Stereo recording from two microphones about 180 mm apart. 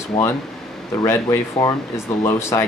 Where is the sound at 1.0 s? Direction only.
15° left (ahead or behind).